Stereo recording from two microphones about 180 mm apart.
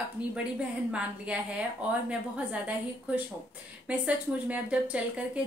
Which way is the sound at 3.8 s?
10° right (ahead or behind).